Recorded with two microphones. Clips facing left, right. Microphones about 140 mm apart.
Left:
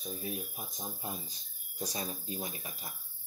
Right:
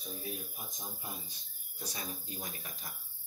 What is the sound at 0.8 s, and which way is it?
Speech, 30° left (ahead or behind).